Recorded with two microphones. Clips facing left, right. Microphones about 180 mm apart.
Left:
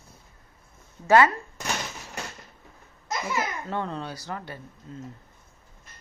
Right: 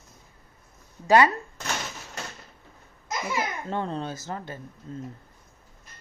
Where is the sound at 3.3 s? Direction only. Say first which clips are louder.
Right 1 dB; 20° right (ahead or behind).